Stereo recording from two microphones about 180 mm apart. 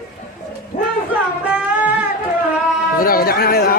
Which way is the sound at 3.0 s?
55° left (ahead or behind).